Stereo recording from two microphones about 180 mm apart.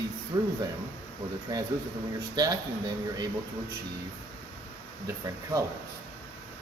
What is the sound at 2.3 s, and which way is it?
Speech, 20° right (ahead or behind).